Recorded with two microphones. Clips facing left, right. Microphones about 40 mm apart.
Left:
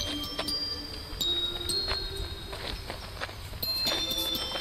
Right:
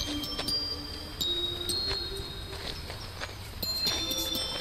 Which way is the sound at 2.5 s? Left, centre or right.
Centre.